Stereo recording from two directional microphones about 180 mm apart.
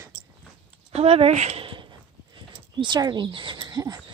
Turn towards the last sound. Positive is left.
turn(degrees=-20)  # may be behind; listen again after turning